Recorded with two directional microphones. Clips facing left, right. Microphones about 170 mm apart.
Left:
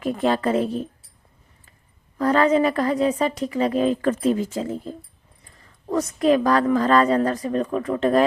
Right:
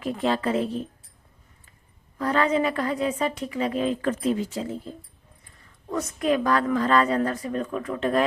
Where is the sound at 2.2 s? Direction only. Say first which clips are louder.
Left 5 dB; 45° left (ahead or behind).